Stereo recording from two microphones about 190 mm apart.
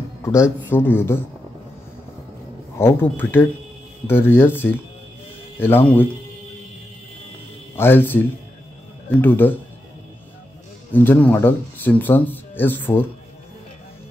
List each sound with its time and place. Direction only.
0.2 s speech: 15° left (ahead or behind)
2.8 s speech: 10° left (ahead or behind)
7.7 s speech: 10° left (ahead or behind)
10.9 s speech: 10° left (ahead or behind)